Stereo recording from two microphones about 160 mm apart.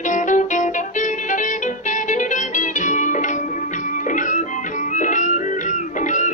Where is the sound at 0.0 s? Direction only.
50° left (ahead or behind).